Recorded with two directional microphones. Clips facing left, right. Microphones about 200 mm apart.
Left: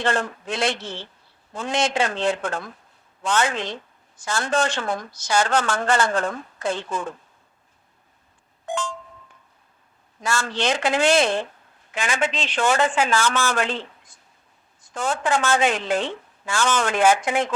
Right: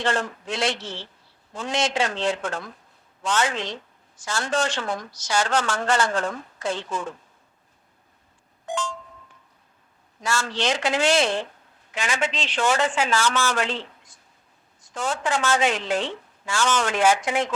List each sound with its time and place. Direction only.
0.0 s a woman's voice: 55° left (ahead or behind)
8.6 s a sound: 55° left (ahead or behind)
10.2 s a woman's voice: 55° left (ahead or behind)